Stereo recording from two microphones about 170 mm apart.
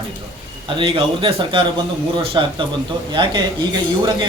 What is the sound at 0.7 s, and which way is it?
A man's voice, 30° right (ahead or behind).